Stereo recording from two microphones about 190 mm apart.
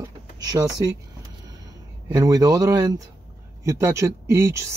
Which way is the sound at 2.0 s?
20° right (ahead or behind).